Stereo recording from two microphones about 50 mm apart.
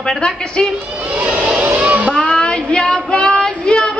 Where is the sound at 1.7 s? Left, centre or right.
Right.